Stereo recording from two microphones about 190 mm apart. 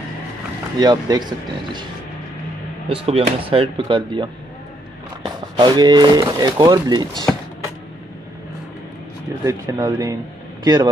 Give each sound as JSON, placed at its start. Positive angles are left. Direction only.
{"t": 0.7, "sound": "speech", "side_deg": -20}
{"t": 2.9, "sound": "speech", "side_deg": -30}
{"t": 9.4, "sound": "speech", "side_deg": -20}